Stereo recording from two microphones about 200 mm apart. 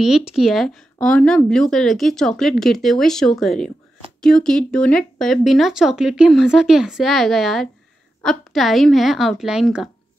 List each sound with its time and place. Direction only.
0.0 s speech: 5° right (ahead or behind)